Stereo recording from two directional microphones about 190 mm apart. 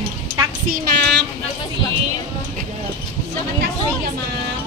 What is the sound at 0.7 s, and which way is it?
Speech, 65° right (ahead or behind).